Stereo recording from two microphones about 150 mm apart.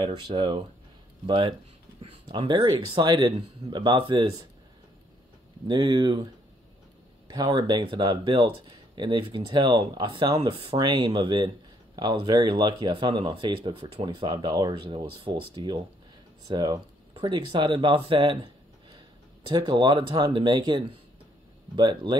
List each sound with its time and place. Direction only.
0.0 s speech: 30° right (ahead or behind)
5.7 s speech: 30° right (ahead or behind)